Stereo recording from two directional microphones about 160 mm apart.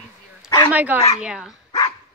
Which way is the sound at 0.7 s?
10° right (ahead or behind).